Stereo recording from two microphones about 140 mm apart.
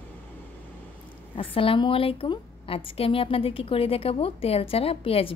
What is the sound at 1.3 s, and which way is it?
A woman's voice, 40° left (ahead or behind).